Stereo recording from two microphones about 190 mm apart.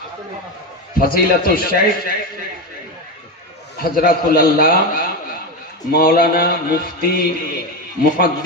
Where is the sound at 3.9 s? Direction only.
50° left (ahead or behind).